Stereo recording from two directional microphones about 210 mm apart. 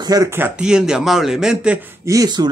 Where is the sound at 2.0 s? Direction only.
15° right (ahead or behind).